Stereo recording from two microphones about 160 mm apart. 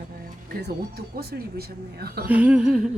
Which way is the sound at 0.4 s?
75° right (ahead or behind).